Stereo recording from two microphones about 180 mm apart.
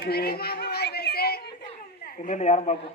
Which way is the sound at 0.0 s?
60° left (ahead or behind).